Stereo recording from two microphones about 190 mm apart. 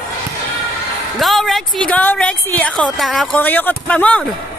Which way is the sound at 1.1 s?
Centre (ahead or behind).